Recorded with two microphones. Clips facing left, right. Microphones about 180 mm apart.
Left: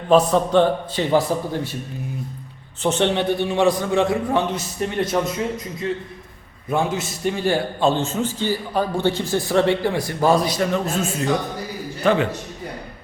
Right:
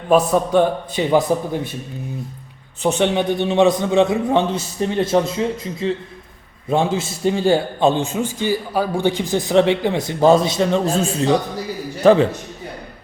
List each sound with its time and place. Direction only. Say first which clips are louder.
0.1 s a man's voice: even; 10° right (ahead or behind)
2.8 s a man's voice: right 2 dB; 10° right (ahead or behind); by 12.3 s 30° right (ahead or behind)